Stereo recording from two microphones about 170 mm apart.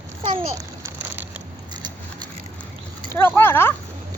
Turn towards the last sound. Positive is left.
turn(degrees=15)  # may be behind; listen again after turning